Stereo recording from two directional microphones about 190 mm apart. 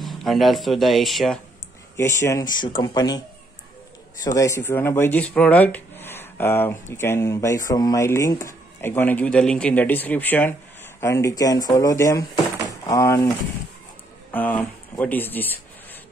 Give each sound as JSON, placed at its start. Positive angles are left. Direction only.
{"t": 0.0, "sound": "speech", "side_deg": 0}
{"t": 2.0, "sound": "speech", "side_deg": 15}
{"t": 4.2, "sound": "speech", "side_deg": 15}
{"t": 14.3, "sound": "speech", "side_deg": 10}